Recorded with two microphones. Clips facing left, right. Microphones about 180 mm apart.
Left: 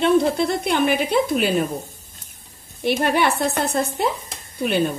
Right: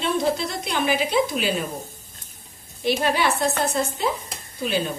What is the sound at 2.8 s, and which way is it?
A woman's voice, 60° left (ahead or behind).